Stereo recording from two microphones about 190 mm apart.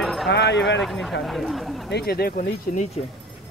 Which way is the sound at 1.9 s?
60° left (ahead or behind).